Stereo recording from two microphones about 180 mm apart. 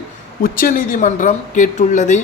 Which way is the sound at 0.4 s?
50° left (ahead or behind).